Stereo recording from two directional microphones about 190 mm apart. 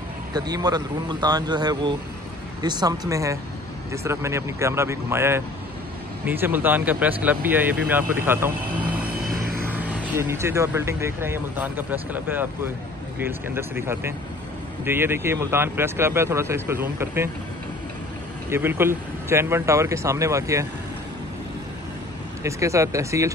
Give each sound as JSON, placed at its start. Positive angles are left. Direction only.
{"t": 0.3, "sound": "speech", "side_deg": -20}
{"t": 9.1, "sound": "a sound", "side_deg": -50}
{"t": 9.7, "sound": "speech", "side_deg": -10}
{"t": 18.5, "sound": "speech", "side_deg": -10}
{"t": 22.4, "sound": "speech", "side_deg": -15}